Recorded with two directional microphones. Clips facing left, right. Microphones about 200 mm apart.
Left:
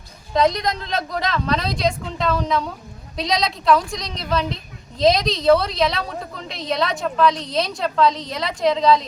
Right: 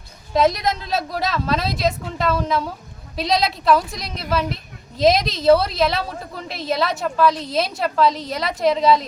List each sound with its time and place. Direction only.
0.3 s a woman's voice: 5° right (ahead or behind)